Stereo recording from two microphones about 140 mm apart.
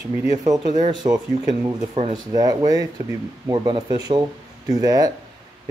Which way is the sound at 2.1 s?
30° right (ahead or behind).